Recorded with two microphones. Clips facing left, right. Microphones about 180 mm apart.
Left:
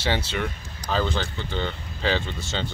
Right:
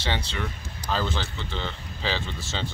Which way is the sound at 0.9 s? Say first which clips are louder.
Left 4 dB; centre (ahead or behind).